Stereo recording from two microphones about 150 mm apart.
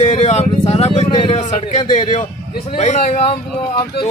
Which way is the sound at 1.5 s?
50° left (ahead or behind).